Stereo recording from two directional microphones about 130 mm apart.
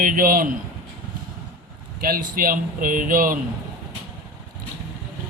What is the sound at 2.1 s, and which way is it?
Speech, 90° right.